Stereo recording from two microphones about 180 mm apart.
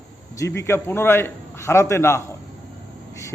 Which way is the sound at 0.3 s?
15° left (ahead or behind).